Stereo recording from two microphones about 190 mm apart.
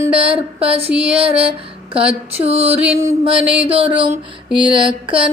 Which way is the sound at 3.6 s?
30° right (ahead or behind).